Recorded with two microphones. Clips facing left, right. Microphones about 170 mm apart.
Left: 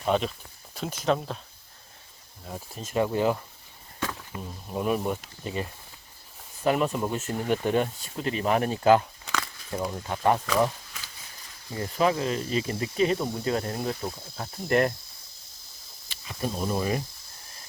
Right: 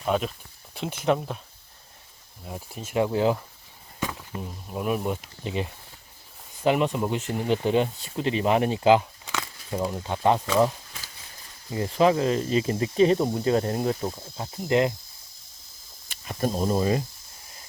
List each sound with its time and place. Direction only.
0.0 s speech: 5° right (ahead or behind)
0.7 s speech: 15° right (ahead or behind)
2.4 s speech: 10° right (ahead or behind)
4.7 s speech: 5° right (ahead or behind)
7.1 s speech: 15° right (ahead or behind)
9.0 s a sound: 15° right (ahead or behind)
11.7 s speech: 25° right (ahead or behind)
14.0 s speech: 15° right (ahead or behind)
16.0 s cricket: 45° right (ahead or behind)
16.6 s speech: 25° right (ahead or behind)